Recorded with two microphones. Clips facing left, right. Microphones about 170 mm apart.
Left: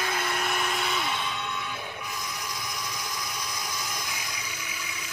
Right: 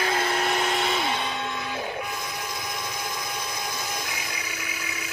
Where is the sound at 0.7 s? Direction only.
35° right (ahead or behind).